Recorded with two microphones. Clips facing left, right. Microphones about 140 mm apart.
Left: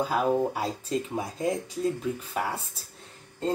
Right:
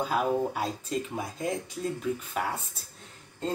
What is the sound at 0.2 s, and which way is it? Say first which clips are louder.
Speech: left 3 dB; 15° left (ahead or behind).